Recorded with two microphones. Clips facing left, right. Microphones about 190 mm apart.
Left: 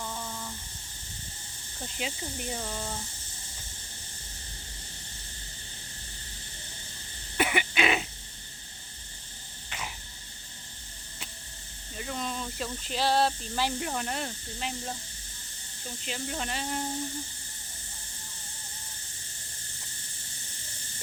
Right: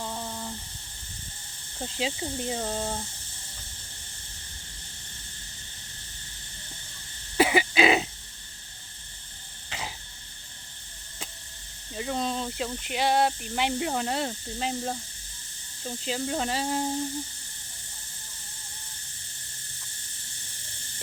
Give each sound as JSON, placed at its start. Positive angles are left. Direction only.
{"t": 0.0, "sound": "a sound", "side_deg": -30}
{"t": 2.0, "sound": "speech", "side_deg": -25}
{"t": 2.6, "sound": "speech", "side_deg": -40}
{"t": 7.3, "sound": "throat clearing", "side_deg": -30}
{"t": 9.6, "sound": "a sound", "side_deg": -25}
{"t": 11.9, "sound": "speech", "side_deg": -30}
{"t": 16.1, "sound": "speech", "side_deg": -30}